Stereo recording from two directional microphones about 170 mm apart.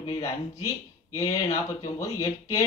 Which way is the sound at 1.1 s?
20° left (ahead or behind).